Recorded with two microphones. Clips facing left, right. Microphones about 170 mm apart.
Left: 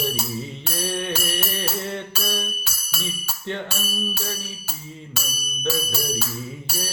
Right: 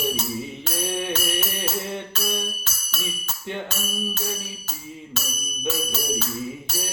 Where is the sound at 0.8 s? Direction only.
15° right (ahead or behind).